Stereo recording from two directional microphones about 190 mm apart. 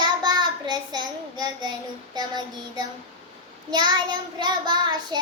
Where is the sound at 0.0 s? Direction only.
25° right (ahead or behind).